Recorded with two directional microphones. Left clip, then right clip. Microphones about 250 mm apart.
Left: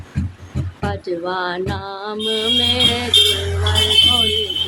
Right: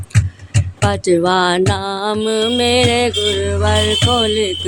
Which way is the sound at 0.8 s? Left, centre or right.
Right.